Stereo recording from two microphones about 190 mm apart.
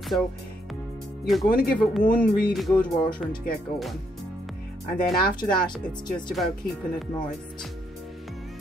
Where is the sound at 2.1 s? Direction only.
50° left (ahead or behind).